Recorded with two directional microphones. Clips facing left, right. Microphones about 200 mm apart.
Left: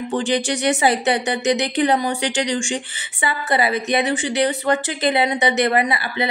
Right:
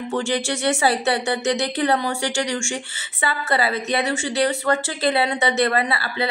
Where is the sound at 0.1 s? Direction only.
15° left (ahead or behind).